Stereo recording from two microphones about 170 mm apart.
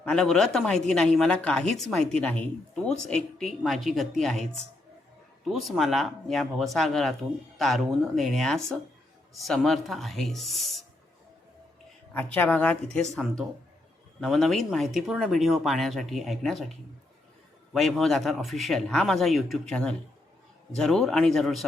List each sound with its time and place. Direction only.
0.0 s speech: 5° left (ahead or behind)
5.5 s speech: centre (ahead or behind)
12.1 s speech: 10° left (ahead or behind)
14.2 s speech: centre (ahead or behind)
17.7 s speech: centre (ahead or behind)